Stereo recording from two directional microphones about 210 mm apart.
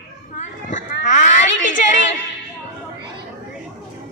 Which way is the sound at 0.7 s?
35° left (ahead or behind).